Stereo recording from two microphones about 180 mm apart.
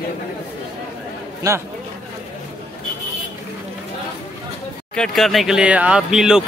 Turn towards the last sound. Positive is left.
turn(degrees=-5)  # may be behind; listen again after turning